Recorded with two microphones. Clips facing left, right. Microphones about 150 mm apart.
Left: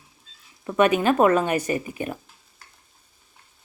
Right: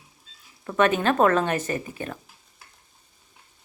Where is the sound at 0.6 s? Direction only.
10° left (ahead or behind).